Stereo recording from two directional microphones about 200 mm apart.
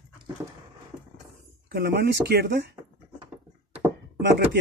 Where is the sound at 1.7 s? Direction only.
55° right (ahead or behind).